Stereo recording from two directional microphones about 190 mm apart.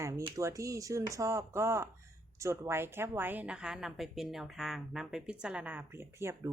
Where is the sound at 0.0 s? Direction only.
15° right (ahead or behind).